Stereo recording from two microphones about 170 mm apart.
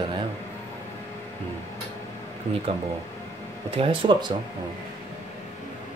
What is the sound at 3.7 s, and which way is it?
Speech, 30° right (ahead or behind).